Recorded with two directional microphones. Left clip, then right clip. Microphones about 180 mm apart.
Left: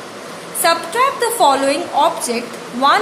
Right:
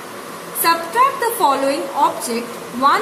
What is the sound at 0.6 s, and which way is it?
A woman's voice, 25° left (ahead or behind).